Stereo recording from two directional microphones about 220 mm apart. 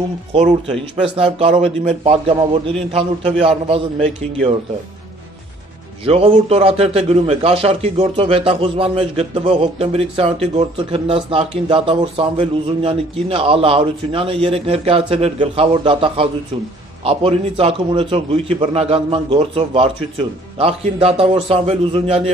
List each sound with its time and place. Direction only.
1.1 s a man's voice: 25° right (ahead or behind)
6.0 s a man's voice: 25° right (ahead or behind)